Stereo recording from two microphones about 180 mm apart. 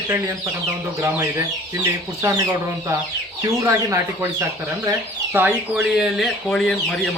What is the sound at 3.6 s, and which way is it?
Speech, 15° right (ahead or behind).